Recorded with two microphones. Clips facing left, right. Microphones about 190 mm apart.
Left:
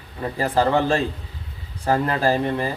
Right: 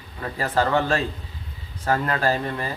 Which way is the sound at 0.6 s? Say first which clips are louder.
Left 2 dB; 30° left (ahead or behind).